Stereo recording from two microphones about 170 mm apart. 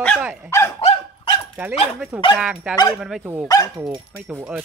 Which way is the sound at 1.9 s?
5° right (ahead or behind).